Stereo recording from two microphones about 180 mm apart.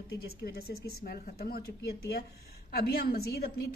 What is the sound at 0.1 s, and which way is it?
A woman's voice, 60° left (ahead or behind).